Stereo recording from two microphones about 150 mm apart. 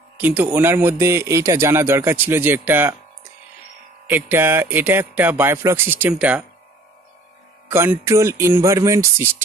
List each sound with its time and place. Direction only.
0.2 s speech: 10° right (ahead or behind)
4.1 s speech: 15° right (ahead or behind)
7.7 s speech: 15° right (ahead or behind)